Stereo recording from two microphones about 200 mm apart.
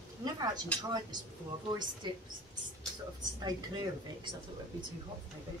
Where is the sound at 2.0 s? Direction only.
20° right (ahead or behind).